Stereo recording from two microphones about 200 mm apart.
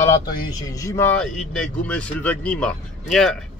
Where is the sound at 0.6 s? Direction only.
15° left (ahead or behind).